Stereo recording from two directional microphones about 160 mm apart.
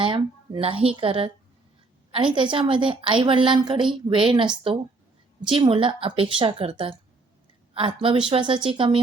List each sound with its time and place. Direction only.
0.0 s a woman's voice: 30° right (ahead or behind)